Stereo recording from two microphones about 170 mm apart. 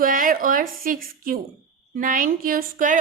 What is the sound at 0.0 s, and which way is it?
A woman's voice, 55° right (ahead or behind).